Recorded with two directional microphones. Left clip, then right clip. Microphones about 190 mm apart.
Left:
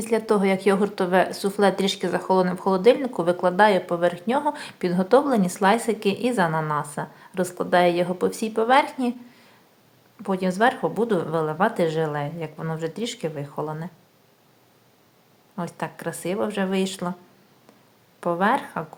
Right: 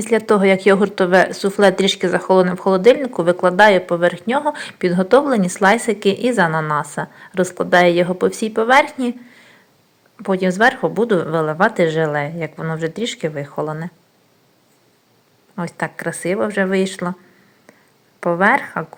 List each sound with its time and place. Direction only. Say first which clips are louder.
0.0 s a woman's voice: right 7 dB; 15° right (ahead or behind)
15.5 s a woman's voice: right 7 dB; 15° right (ahead or behind)
18.2 s a woman's voice: right 7 dB; 15° right (ahead or behind)